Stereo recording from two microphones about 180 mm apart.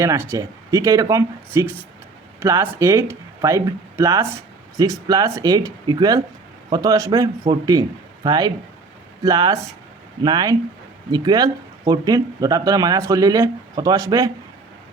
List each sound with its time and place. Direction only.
0.0 s speech: 15° right (ahead or behind)